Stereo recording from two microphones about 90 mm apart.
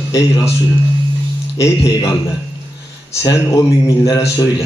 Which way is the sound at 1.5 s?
40° left (ahead or behind).